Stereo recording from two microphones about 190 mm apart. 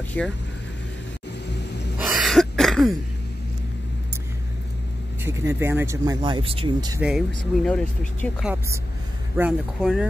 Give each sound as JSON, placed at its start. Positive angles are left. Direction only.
{"t": 0.2, "sound": "speech", "side_deg": 5}
{"t": 2.0, "sound": "throat clearing", "side_deg": 0}
{"t": 5.2, "sound": "speech", "side_deg": -15}
{"t": 7.0, "sound": "speech", "side_deg": -5}